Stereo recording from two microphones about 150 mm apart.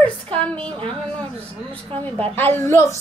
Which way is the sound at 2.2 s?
15° left (ahead or behind).